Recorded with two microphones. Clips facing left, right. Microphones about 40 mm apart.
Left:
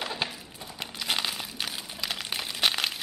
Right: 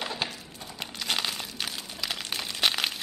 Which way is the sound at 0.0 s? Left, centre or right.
Centre.